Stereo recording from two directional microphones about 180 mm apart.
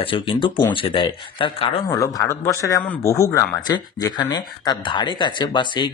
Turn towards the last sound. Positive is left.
turn(degrees=25)  # may be behind; listen again after turning